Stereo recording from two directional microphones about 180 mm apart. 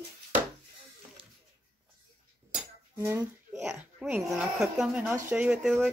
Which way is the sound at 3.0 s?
15° right (ahead or behind).